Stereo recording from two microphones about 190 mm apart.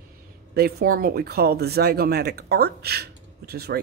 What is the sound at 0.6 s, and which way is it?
Speech, 55° right (ahead or behind).